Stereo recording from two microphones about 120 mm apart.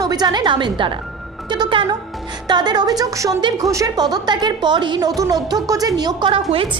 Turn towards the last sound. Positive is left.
turn(degrees=-50)  # may be behind; listen again after turning